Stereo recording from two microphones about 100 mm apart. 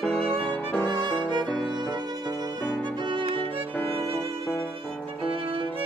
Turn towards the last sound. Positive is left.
turn(degrees=-65)  # may be behind; listen again after turning